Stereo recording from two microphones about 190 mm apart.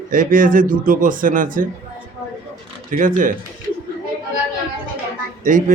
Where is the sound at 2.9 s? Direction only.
45° right (ahead or behind).